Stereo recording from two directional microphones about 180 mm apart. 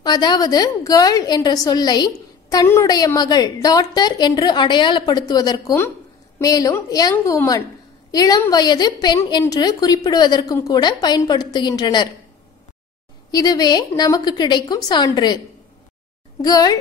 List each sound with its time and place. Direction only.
0.0 s a woman's voice: 25° left (ahead or behind)
13.3 s a woman's voice: 20° left (ahead or behind)
16.3 s a woman's voice: 20° left (ahead or behind)